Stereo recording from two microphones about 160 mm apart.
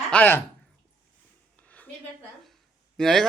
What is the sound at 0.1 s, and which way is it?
Speech, 10° left (ahead or behind).